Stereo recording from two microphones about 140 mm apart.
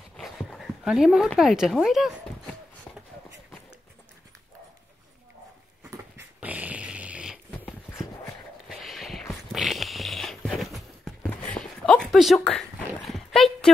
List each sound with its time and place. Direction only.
0.2 s dog: centre (ahead or behind)
1.4 s speech: 5° right (ahead or behind)
5.9 s dog: 15° right (ahead or behind)
7.6 s horse: 20° left (ahead or behind)
8.6 s a sound: centre (ahead or behind)